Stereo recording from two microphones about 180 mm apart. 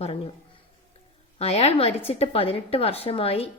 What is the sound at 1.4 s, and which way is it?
A woman's voice, 35° left (ahead or behind).